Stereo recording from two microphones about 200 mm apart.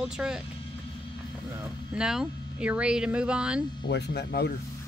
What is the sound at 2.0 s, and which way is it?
Speech, 5° right (ahead or behind).